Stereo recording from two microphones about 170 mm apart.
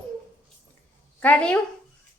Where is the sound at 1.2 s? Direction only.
5° left (ahead or behind).